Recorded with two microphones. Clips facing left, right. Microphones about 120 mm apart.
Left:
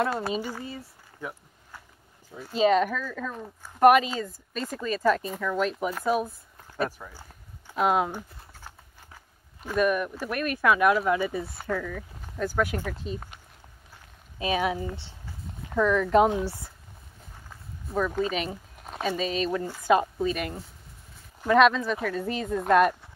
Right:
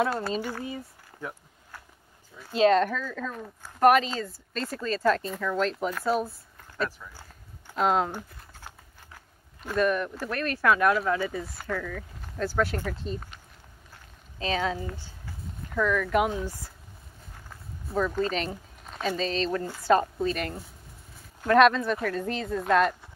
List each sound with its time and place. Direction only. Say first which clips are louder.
0.3 s speech: even; 5° left (ahead or behind)
0.7 s a sound: right 2 dB; 5° left (ahead or behind)
2.5 s speech: right 1 dB; 5° left (ahead or behind)
7.0 s speech: left 3 dB; 50° left (ahead or behind)
7.6 s typing: left 1 dB; 5° left (ahead or behind)
9.7 s speech: left 1 dB; 10° left (ahead or behind)
11.4 s speech: left 2 dB; 25° left (ahead or behind)
11.7 s speech: left 2 dB; 5° left (ahead or behind)
14.4 s speech: left 2 dB; 15° left (ahead or behind)
17.9 s speech: even; 5° left (ahead or behind)